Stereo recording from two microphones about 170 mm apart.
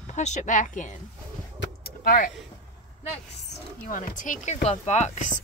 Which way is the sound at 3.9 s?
55° left (ahead or behind).